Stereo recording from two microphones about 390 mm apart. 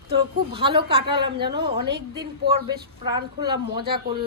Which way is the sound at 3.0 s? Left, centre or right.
Centre.